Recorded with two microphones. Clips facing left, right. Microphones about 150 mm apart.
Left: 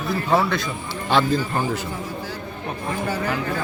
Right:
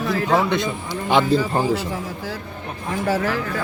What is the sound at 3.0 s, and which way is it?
Speech, 90° right.